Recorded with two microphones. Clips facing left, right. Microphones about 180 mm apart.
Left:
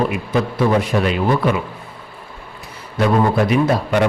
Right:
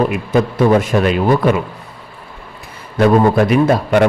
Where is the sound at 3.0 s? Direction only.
50° right (ahead or behind).